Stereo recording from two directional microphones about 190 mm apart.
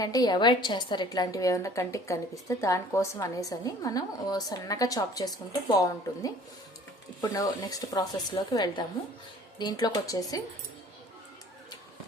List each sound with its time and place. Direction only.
0.0 s a woman's voice: 20° left (ahead or behind)